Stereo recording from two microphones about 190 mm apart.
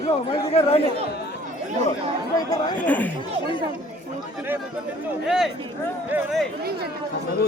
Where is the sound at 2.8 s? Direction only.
10° left (ahead or behind).